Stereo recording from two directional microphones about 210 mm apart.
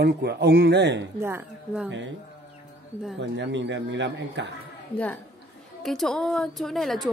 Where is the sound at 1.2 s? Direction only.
10° right (ahead or behind).